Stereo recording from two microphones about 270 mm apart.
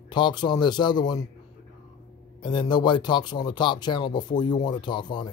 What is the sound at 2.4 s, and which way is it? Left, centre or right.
Speech, centre.